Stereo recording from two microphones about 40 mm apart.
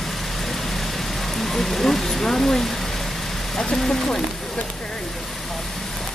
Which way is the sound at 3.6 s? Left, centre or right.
Centre.